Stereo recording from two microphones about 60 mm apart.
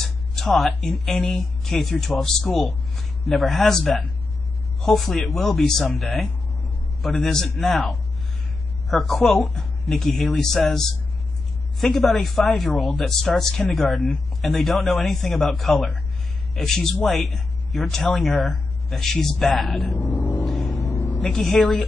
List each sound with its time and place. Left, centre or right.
0.0 s music: centre
0.7 s a man's voice: centre
20.0 s music: left
20.4 s music: centre
20.8 s a sound: left
21.2 s speech: centre